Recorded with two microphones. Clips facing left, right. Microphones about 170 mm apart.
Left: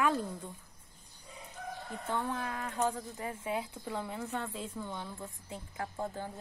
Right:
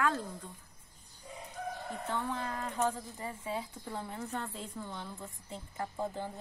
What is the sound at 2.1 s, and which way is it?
Speech, 10° left (ahead or behind).